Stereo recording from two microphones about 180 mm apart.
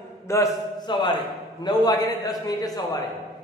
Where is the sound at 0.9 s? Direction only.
25° left (ahead or behind).